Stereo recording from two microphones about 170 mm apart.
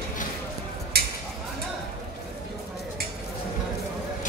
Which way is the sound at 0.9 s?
65° right (ahead or behind).